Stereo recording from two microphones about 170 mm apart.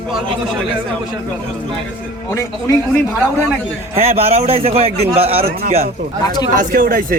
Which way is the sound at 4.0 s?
35° right (ahead or behind).